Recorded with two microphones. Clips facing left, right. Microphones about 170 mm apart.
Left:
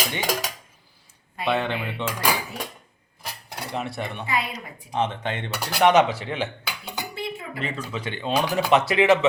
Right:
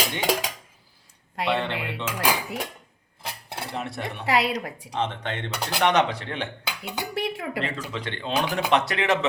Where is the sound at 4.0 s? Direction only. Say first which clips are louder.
Right 7 dB; 85° right.